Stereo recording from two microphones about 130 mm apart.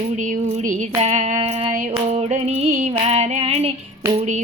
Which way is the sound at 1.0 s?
60° right (ahead or behind).